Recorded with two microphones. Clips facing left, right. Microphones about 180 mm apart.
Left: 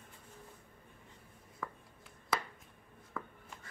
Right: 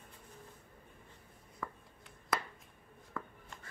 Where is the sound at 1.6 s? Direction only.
Centre (ahead or behind).